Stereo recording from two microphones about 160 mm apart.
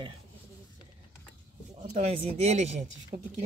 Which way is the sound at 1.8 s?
45° right (ahead or behind).